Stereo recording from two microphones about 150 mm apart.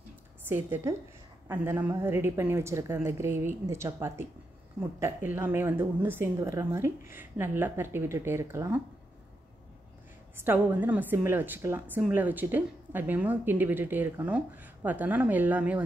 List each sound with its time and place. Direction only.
0.5 s a woman's voice: 15° right (ahead or behind)
10.3 s a woman's voice: 15° right (ahead or behind)